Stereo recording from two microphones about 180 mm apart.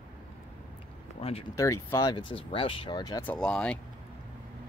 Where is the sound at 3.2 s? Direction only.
5° left (ahead or behind).